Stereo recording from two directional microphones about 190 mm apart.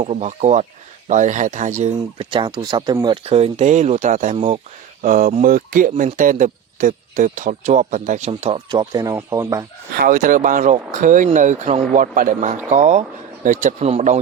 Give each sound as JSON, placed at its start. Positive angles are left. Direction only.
{"t": 0.0, "sound": "speech", "side_deg": -35}
{"t": 8.3, "sound": "speech", "side_deg": -30}
{"t": 10.0, "sound": "speech", "side_deg": -45}